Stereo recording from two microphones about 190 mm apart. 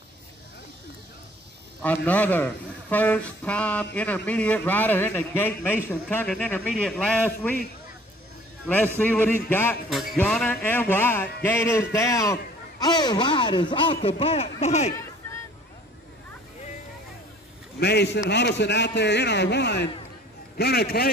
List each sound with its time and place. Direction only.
1.8 s a man's voice: 10° left (ahead or behind)
8.9 s a man's voice: 10° left (ahead or behind); by 15.0 s 35° left (ahead or behind)
17.7 s a man's voice: 60° left (ahead or behind)